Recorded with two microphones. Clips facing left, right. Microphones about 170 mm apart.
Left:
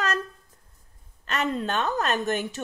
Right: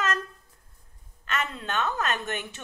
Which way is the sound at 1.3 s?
40° left (ahead or behind).